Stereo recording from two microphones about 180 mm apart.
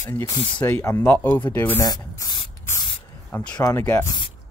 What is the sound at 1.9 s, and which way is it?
Spray, 20° left (ahead or behind).